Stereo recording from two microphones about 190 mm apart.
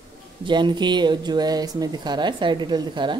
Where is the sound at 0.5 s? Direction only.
25° right (ahead or behind).